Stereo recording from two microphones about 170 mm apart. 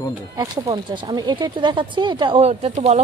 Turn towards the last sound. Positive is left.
turn(degrees=-40)  # may be behind; listen again after turning